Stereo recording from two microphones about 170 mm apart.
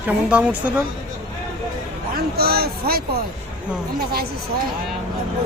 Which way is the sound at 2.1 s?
65° right (ahead or behind).